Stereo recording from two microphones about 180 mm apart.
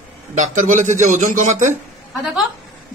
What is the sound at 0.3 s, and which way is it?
A man's voice, 40° right (ahead or behind).